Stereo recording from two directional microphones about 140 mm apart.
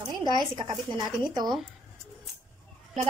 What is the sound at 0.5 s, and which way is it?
Speech, 30° right (ahead or behind).